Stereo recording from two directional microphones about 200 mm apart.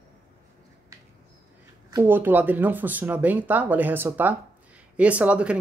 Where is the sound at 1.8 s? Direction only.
15° right (ahead or behind).